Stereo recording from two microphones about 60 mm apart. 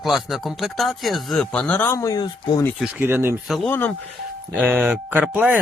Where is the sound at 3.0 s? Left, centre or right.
Right.